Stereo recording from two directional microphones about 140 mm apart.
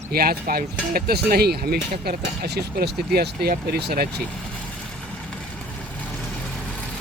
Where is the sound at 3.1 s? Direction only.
90° right.